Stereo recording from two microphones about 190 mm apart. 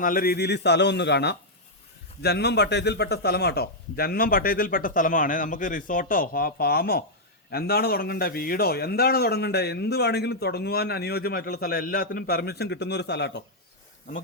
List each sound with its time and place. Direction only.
0.0 s a man's voice: 50° left (ahead or behind)